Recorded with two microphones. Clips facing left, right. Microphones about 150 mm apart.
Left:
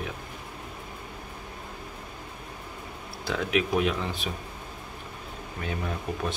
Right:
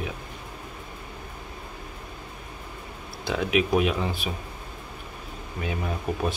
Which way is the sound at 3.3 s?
10° right (ahead or behind).